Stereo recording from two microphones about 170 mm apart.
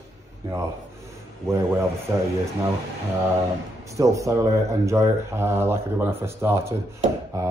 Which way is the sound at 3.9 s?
20° right (ahead or behind).